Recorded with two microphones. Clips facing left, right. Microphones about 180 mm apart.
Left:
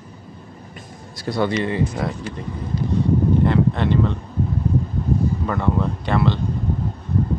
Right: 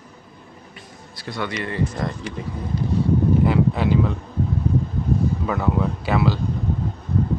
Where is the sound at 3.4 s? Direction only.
5° right (ahead or behind).